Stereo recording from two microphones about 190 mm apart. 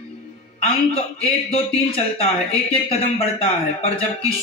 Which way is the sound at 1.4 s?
30° left (ahead or behind).